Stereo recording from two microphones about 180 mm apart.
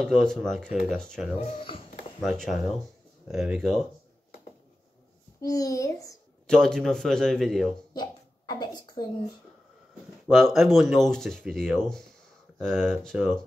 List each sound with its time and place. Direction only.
0.0 s speech: 5° left (ahead or behind)
1.5 s a child's voice: 30° left (ahead or behind)
2.2 s speech: centre (ahead or behind)
5.4 s a child's voice: 20° left (ahead or behind)
6.4 s speech: 5° left (ahead or behind)
7.9 s a child's voice: 25° left (ahead or behind)
10.2 s speech: centre (ahead or behind)